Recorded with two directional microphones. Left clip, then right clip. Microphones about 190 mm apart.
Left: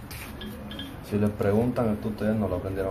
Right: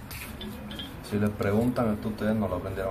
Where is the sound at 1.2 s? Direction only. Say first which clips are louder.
Left 2 dB; 20° left (ahead or behind).